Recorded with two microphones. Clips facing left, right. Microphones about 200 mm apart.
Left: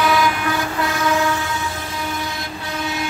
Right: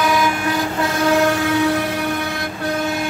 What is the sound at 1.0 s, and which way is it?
Train, 55° right (ahead or behind).